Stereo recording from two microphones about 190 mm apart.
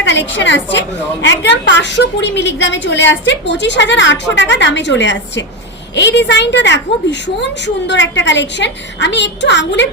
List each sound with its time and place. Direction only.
0.0 s a woman's voice: 70° left (ahead or behind)